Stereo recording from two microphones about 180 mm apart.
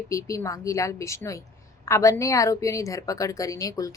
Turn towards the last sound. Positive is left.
turn(degrees=20)  # may be behind; listen again after turning